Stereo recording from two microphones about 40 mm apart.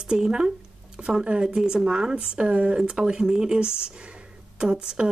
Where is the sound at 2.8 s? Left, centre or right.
Centre.